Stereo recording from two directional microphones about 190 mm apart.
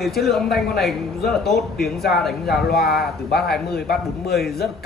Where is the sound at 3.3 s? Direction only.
55° left (ahead or behind).